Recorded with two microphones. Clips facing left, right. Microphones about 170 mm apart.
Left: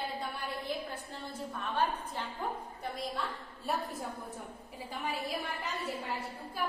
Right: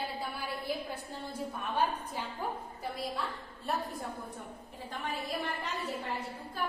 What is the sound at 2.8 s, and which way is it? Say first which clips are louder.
Speech: right 1 dB; centre (ahead or behind).